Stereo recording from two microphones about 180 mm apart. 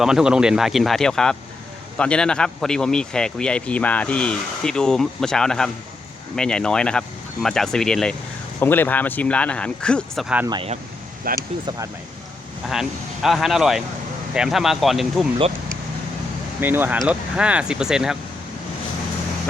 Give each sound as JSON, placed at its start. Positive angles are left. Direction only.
{"t": 0.0, "sound": "a man's voice", "side_deg": -5}
{"t": 10.2, "sound": "speech", "side_deg": -10}
{"t": 10.5, "sound": "speech", "side_deg": -30}
{"t": 11.3, "sound": "speech", "side_deg": -20}
{"t": 12.6, "sound": "a man's voice", "side_deg": 0}
{"t": 16.6, "sound": "a man's voice", "side_deg": -10}